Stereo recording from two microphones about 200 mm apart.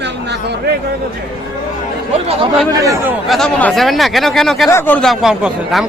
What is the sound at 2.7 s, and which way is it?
Speech, 15° right (ahead or behind).